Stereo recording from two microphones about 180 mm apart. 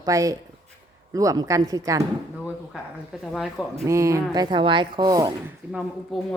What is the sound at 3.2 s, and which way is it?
Speech, centre (ahead or behind).